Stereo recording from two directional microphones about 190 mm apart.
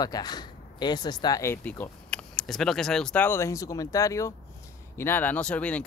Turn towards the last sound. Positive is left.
turn(degrees=5)  # may be behind; listen again after turning